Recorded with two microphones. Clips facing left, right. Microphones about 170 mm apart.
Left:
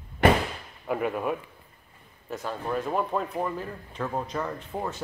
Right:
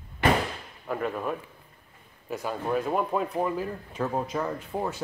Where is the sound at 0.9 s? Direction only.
10° left (ahead or behind).